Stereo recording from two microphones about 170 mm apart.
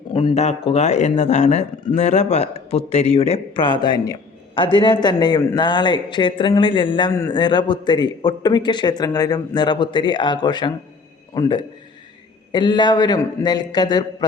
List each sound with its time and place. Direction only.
0.1 s a man's voice: 30° left (ahead or behind)